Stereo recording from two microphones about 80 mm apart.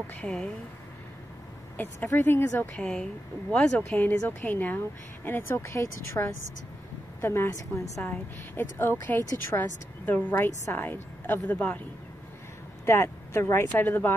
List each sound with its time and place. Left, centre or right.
0.2 s speech: centre
2.1 s speech: left
2.8 s a woman's voice: centre; by 8.1 s left
8.5 s a woman's voice: left
12.8 s speech: left